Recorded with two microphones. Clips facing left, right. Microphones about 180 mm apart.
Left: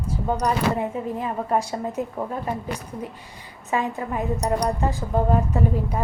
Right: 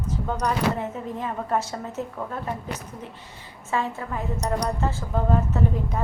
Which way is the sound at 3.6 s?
15° left (ahead or behind).